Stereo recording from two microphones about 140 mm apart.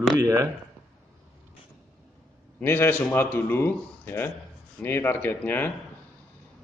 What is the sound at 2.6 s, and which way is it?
A man's voice, 15° left (ahead or behind).